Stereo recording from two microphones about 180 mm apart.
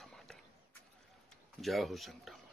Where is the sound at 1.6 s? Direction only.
Centre (ahead or behind).